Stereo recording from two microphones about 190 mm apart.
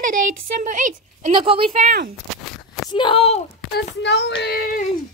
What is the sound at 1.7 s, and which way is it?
Speech, 45° right (ahead or behind).